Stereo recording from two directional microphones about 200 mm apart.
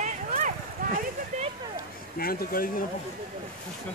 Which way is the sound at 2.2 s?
45° left (ahead or behind).